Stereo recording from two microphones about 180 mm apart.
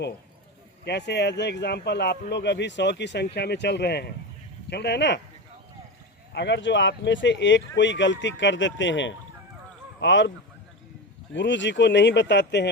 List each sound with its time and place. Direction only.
0.9 s a man's voice: 70° left (ahead or behind)
6.3 s speech: 75° left (ahead or behind)
11.3 s a man's voice: 80° left